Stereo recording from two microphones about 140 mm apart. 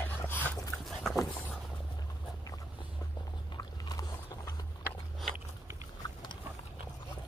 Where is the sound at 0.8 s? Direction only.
Centre (ahead or behind).